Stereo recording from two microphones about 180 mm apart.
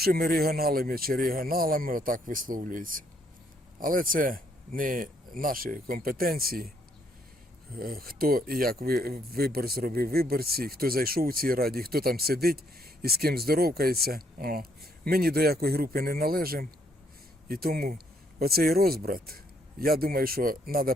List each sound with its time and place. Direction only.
0.0 s speech: 55° right (ahead or behind)
7.8 s speech: 55° right (ahead or behind)